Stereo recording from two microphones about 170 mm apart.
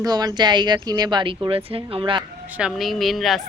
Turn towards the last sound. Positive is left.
turn(degrees=0)  # may be behind; listen again after turning